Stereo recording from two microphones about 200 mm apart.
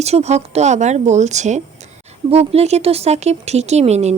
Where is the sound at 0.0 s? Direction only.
35° right (ahead or behind).